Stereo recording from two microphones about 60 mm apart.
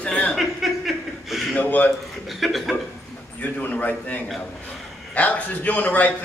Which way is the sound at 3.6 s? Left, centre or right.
Left.